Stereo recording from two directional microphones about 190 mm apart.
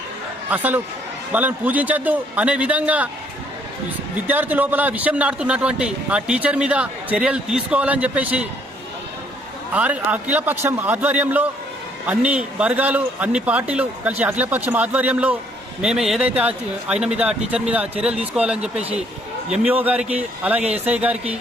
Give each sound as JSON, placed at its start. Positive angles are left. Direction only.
{"t": 0.5, "sound": "a man's voice", "side_deg": -10}
{"t": 4.3, "sound": "a man's voice", "side_deg": -10}
{"t": 9.7, "sound": "a man's voice", "side_deg": -5}
{"t": 20.6, "sound": "a man's voice", "side_deg": -35}
{"t": 20.8, "sound": "a man's voice", "side_deg": -10}